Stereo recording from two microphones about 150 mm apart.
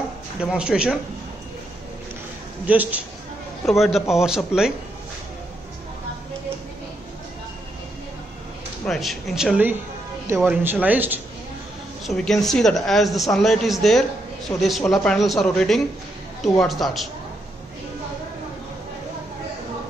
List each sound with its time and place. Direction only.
0.4 s speech: 5° right (ahead or behind)
2.6 s speech: 10° right (ahead or behind)
8.8 s speech: centre (ahead or behind)
12.1 s speech: centre (ahead or behind)